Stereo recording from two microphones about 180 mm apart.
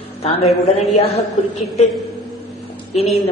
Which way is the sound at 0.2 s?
35° left (ahead or behind).